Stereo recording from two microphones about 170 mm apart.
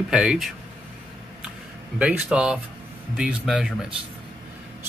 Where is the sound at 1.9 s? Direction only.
5° right (ahead or behind).